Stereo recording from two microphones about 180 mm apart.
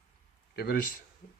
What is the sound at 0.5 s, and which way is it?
Speech, 60° left (ahead or behind).